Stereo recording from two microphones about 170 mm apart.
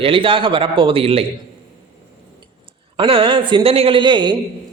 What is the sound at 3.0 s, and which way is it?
A man's voice, 30° right (ahead or behind).